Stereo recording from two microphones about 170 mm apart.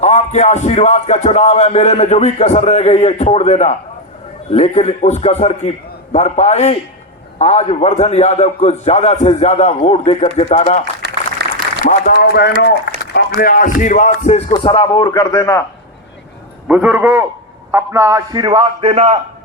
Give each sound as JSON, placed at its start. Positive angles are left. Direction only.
{"t": 0.0, "sound": "speech", "side_deg": 45}
{"t": 11.0, "sound": "a sound", "side_deg": -75}
{"t": 11.9, "sound": "speech", "side_deg": 65}
{"t": 13.1, "sound": "speech", "side_deg": 60}
{"t": 14.5, "sound": "speech", "side_deg": 30}
{"t": 16.6, "sound": "a man's voice", "side_deg": -5}